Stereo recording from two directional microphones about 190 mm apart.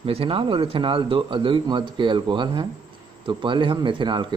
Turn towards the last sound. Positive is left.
turn(degrees=-25)  # may be behind; listen again after turning